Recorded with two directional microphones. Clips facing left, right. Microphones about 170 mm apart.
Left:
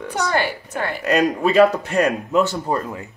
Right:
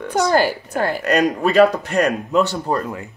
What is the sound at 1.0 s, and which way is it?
Speech, 5° left (ahead or behind).